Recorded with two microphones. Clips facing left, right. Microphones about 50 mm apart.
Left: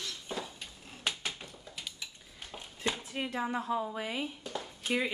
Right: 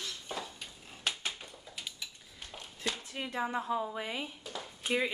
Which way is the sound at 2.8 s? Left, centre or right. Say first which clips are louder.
Left 3 dB; centre.